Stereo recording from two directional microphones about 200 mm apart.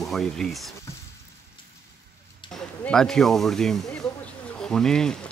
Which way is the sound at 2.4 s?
25° left (ahead or behind).